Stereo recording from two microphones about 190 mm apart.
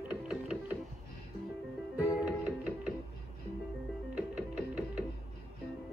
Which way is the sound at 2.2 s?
5° right (ahead or behind).